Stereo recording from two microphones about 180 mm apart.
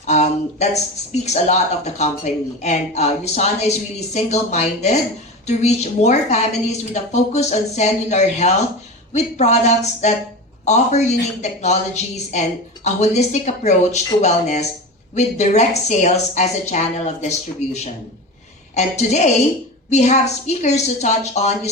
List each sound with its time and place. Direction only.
0.0 s speech: 40° left (ahead or behind)
18.7 s speech: 40° left (ahead or behind)